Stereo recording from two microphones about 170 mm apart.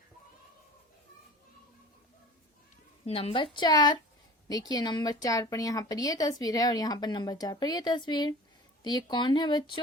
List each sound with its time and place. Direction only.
3.1 s speech: 35° left (ahead or behind)